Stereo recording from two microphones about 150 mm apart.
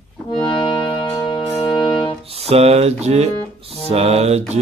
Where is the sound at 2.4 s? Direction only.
45° right (ahead or behind).